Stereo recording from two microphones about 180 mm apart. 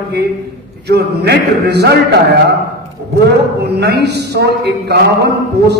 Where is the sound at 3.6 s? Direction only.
65° right (ahead or behind).